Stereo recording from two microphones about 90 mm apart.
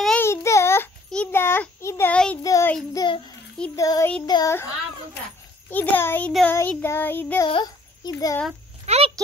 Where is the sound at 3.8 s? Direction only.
40° left (ahead or behind).